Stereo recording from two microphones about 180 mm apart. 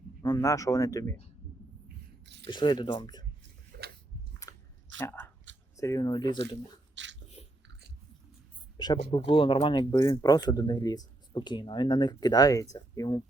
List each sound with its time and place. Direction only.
0.2 s speech: 20° left (ahead or behind)
2.2 s a sound: 75° right (ahead or behind)
2.5 s speech: 25° left (ahead or behind)
3.7 s a sound: 65° right (ahead or behind)
4.4 s biting: 20° left (ahead or behind)
4.9 s speech: 10° left (ahead or behind)
6.9 s dog: 85° right
9.0 s speech: 30° left (ahead or behind)